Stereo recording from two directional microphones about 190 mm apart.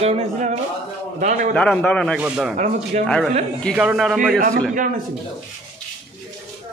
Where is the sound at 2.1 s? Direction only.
5° right (ahead or behind).